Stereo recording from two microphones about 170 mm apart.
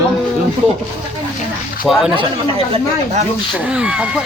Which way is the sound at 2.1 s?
30° right (ahead or behind).